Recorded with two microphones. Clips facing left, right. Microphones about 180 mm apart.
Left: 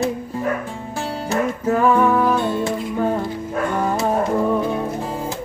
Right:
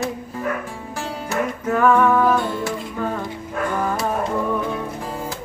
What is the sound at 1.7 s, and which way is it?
Music, 25° left (ahead or behind).